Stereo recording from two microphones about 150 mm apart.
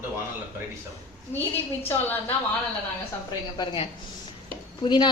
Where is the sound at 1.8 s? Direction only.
15° left (ahead or behind).